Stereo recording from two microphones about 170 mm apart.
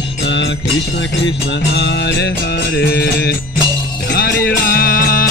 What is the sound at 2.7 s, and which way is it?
Music, 70° left (ahead or behind).